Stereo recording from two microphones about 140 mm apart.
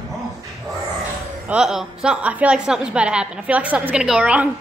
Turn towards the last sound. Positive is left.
turn(degrees=-10)  # may be behind; listen again after turning